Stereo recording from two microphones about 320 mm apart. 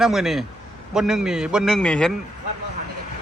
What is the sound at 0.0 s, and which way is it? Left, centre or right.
Speech, centre.